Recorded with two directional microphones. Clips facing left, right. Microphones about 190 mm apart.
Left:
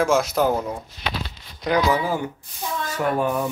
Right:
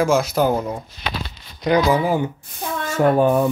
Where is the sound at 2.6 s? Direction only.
55° right (ahead or behind).